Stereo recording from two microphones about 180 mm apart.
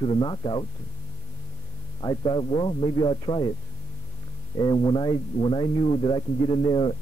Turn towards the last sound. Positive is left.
turn(degrees=25)  # may be behind; listen again after turning